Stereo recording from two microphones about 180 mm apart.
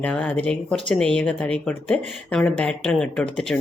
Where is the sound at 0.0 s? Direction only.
5° left (ahead or behind).